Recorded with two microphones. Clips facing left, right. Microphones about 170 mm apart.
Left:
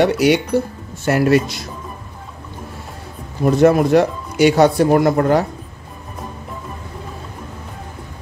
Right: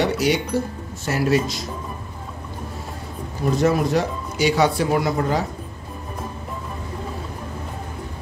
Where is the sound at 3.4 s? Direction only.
60° left (ahead or behind).